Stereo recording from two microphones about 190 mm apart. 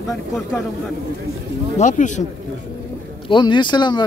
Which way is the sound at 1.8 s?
40° left (ahead or behind).